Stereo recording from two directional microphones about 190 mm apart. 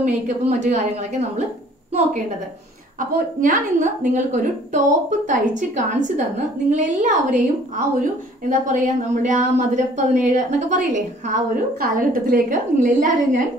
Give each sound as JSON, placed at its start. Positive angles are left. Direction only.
{"t": 0.0, "sound": "a woman's voice", "side_deg": -40}
{"t": 3.0, "sound": "a woman's voice", "side_deg": -45}